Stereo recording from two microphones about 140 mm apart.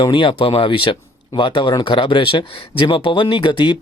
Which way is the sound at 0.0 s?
35° left (ahead or behind).